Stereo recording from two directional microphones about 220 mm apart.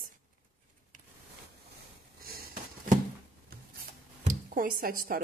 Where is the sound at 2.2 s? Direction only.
40° right (ahead or behind).